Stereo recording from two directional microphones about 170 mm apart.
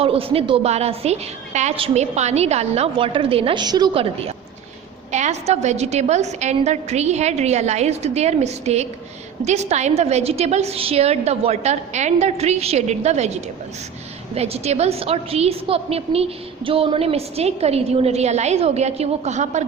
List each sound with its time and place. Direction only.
0.0 s a woman's voice: 35° right (ahead or behind)